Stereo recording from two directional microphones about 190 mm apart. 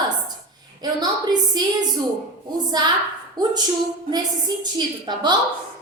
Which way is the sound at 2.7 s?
20° right (ahead or behind).